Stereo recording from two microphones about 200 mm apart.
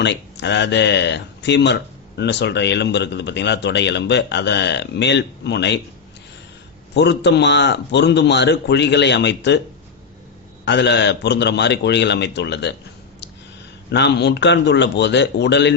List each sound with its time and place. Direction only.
0.0 s speech: 60° left (ahead or behind)
6.9 s speech: 60° left (ahead or behind)
10.7 s speech: 60° left (ahead or behind)
13.9 s speech: 60° left (ahead or behind)